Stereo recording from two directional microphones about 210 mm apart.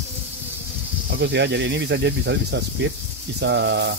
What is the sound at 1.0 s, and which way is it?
Speech, 55° right (ahead or behind).